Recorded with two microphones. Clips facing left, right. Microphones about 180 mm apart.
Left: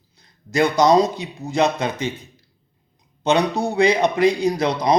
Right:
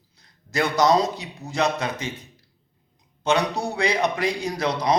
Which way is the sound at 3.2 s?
20° left (ahead or behind).